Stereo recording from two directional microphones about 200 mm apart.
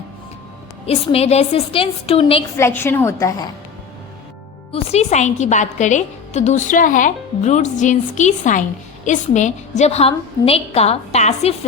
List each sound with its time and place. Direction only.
0.9 s a woman's voice: 30° left (ahead or behind)
2.6 s a woman's voice: 10° left (ahead or behind)
4.7 s a woman's voice: 35° left (ahead or behind)